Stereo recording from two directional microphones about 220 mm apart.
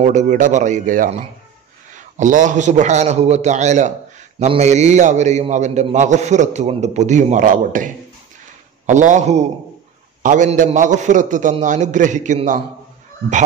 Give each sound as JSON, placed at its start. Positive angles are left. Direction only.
{"t": 0.0, "sound": "a man's voice", "side_deg": -30}